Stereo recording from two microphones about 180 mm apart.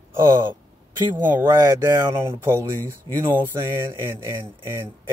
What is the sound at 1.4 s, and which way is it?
Speech, 15° right (ahead or behind).